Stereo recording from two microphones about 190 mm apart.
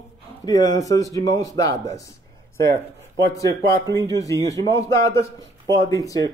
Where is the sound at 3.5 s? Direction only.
60° right (ahead or behind).